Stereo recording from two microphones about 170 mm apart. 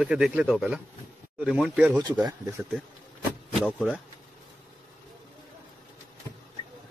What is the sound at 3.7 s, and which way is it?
Speech, centre (ahead or behind).